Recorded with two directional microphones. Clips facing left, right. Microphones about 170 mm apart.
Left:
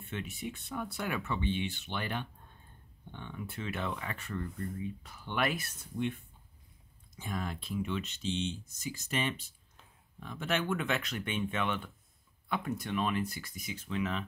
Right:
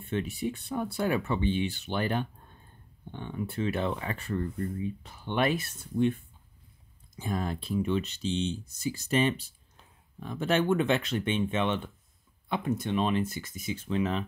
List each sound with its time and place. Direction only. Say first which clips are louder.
0.1 s speech: right 9 dB; 35° right (ahead or behind)
7.2 s speech: right 6 dB; 35° right (ahead or behind)